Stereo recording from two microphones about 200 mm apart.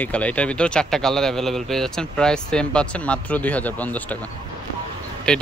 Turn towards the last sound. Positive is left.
turn(degrees=5)  # may be behind; listen again after turning